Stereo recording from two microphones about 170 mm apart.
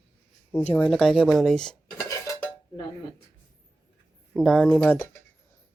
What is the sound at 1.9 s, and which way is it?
Dishes, 15° left (ahead or behind).